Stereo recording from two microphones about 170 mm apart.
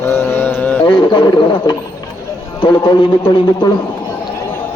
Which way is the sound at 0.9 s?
25° left (ahead or behind).